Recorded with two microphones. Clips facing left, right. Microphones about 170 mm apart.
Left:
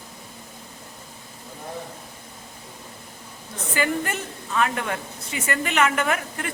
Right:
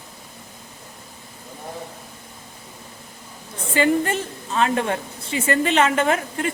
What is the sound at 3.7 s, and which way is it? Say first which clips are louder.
A woman's voice: right 6 dB; 25° right (ahead or behind).